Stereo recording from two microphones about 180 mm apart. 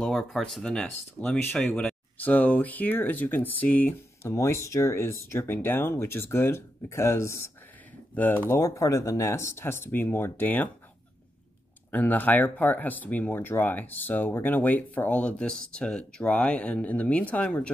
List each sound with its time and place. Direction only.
0.0 s speech: 5° left (ahead or behind)
11.9 s speech: 10° left (ahead or behind)